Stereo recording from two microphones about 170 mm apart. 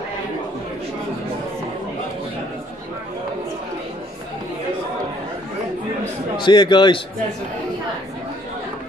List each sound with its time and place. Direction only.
6.3 s a man's voice: 25° left (ahead or behind)